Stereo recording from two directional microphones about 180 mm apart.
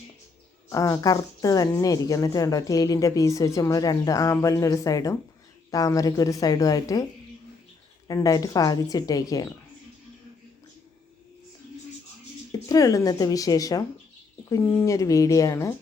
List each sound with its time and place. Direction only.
0.7 s speech: 20° left (ahead or behind)
8.0 s speech: 20° left (ahead or behind)
12.5 s speech: 20° left (ahead or behind)